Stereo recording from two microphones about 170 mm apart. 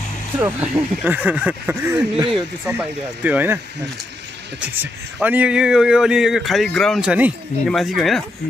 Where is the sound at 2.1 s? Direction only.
30° right (ahead or behind).